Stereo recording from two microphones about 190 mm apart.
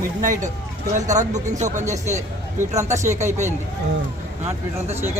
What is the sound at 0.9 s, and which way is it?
Speech, 40° right (ahead or behind).